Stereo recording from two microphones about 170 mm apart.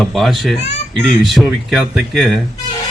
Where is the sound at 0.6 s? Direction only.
40° left (ahead or behind).